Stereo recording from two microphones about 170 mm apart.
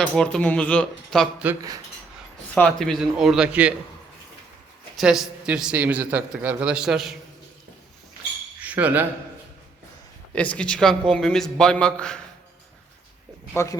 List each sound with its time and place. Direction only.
0.0 s a man's voice: 5° left (ahead or behind)
2.6 s a man's voice: 5° left (ahead or behind)
4.9 s a man's voice: centre (ahead or behind)
8.6 s speech: 10° right (ahead or behind)
10.3 s a man's voice: 10° left (ahead or behind)
13.5 s speech: 15° left (ahead or behind)